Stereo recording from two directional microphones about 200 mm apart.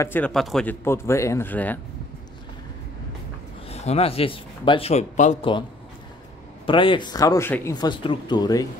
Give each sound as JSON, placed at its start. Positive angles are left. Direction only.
{"t": 0.0, "sound": "speech", "side_deg": 10}
{"t": 3.6, "sound": "speech", "side_deg": 30}
{"t": 6.6, "sound": "a man's voice", "side_deg": 25}